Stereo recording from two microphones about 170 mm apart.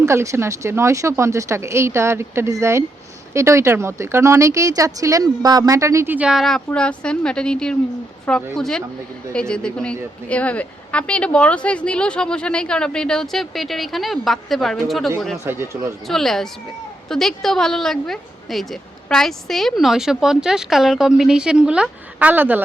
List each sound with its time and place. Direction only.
0.0 s speech: 15° right (ahead or behind); by 15.1 s centre (ahead or behind)
15.4 s speech: 15° right (ahead or behind)
16.0 s speech: centre (ahead or behind)